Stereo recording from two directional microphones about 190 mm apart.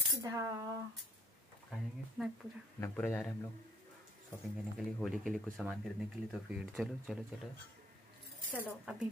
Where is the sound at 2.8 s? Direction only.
10° left (ahead or behind).